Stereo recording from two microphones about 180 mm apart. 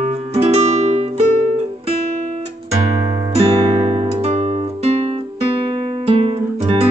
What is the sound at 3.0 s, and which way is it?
Music, 20° right (ahead or behind).